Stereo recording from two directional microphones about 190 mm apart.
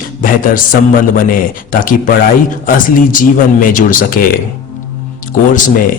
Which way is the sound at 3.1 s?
45° left (ahead or behind).